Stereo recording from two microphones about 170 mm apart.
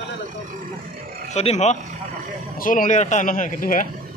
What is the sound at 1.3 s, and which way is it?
Speech, 40° left (ahead or behind).